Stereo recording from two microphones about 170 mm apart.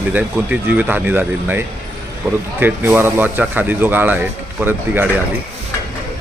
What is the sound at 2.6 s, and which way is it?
Speech, 10° right (ahead or behind).